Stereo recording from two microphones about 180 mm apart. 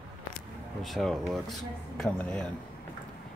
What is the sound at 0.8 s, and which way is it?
Speech, centre (ahead or behind).